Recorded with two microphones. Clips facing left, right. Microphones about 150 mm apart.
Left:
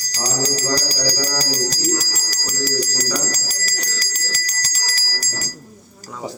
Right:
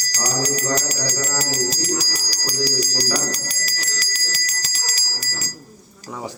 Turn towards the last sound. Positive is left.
turn(degrees=45)  # may be behind; listen again after turning